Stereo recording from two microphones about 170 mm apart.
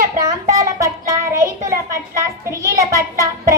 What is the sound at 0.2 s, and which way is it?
Child singing, 20° right (ahead or behind).